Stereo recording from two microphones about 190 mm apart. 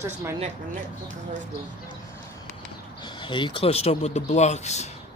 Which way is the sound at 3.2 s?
25° left (ahead or behind).